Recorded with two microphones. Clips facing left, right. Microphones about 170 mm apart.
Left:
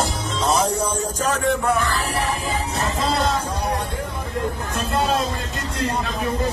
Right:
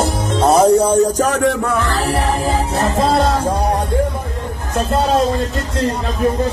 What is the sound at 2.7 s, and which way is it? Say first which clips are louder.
Music: right 8 dB; 55° right (ahead or behind).